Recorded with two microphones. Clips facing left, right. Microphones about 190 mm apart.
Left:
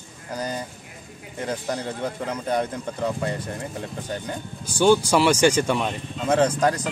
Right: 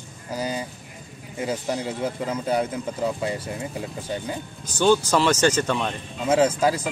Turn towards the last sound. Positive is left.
turn(degrees=-5)  # may be behind; listen again after turning